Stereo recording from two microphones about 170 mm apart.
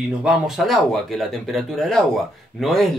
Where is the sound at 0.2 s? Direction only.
Centre (ahead or behind).